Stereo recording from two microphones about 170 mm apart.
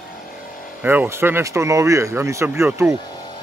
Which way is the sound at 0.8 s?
10° right (ahead or behind).